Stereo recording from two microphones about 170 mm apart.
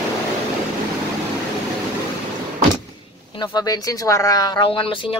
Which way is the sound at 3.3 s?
25° left (ahead or behind).